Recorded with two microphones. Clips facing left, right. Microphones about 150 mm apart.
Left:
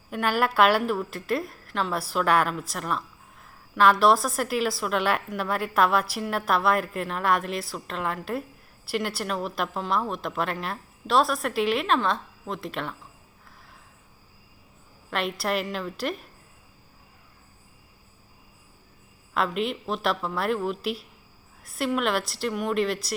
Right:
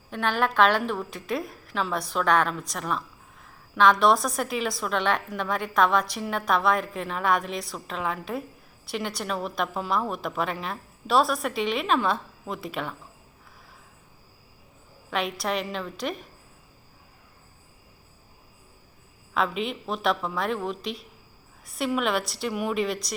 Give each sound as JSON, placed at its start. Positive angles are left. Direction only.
{"t": 0.1, "sound": "a woman's voice", "side_deg": 5}
{"t": 15.1, "sound": "a woman's voice", "side_deg": 0}
{"t": 19.3, "sound": "a woman's voice", "side_deg": 0}